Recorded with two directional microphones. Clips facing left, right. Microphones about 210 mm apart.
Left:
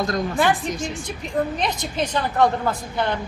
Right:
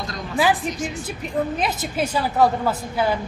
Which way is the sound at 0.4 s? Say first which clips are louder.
Right 4 dB; 5° right (ahead or behind).